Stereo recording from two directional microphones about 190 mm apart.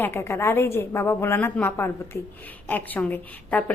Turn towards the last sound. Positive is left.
turn(degrees=10)  # may be behind; listen again after turning